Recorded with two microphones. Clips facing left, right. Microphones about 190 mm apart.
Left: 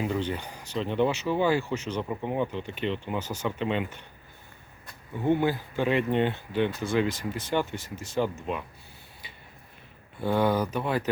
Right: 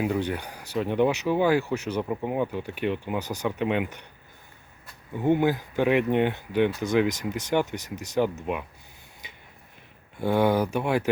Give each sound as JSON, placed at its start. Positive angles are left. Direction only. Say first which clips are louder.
{"t": 0.0, "sound": "speech", "louder": "right 3 dB", "side_deg": -10}
{"t": 5.2, "sound": "speech", "louder": "right 2 dB", "side_deg": -15}
{"t": 10.2, "sound": "speech", "louder": "right 2 dB", "side_deg": -10}